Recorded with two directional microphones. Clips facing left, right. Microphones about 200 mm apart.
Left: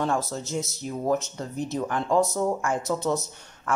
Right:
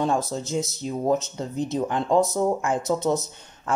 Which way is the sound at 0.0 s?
15° right (ahead or behind).